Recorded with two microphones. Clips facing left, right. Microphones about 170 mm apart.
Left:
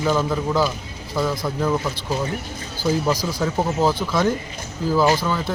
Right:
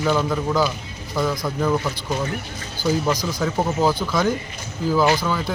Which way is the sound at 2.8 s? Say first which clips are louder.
Even; 5° left (ahead or behind).